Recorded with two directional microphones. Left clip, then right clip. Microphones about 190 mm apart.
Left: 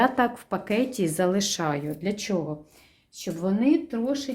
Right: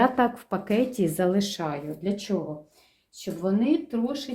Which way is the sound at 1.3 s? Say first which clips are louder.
Left 1 dB; 35° left (ahead or behind).